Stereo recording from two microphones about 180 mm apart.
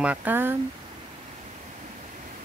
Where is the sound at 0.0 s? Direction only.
10° right (ahead or behind).